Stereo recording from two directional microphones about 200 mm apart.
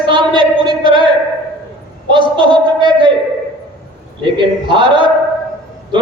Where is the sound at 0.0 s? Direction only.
25° right (ahead or behind).